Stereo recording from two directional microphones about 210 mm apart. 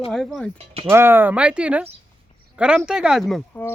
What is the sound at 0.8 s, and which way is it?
Speech, 10° right (ahead or behind).